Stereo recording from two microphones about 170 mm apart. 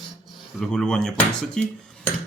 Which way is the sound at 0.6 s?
5° left (ahead or behind).